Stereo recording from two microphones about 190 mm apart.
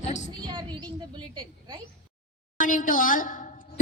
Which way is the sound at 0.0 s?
40° left (ahead or behind).